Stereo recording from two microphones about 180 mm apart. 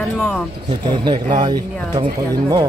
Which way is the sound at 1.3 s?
25° right (ahead or behind).